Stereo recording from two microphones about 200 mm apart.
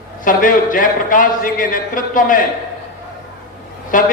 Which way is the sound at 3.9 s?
40° left (ahead or behind).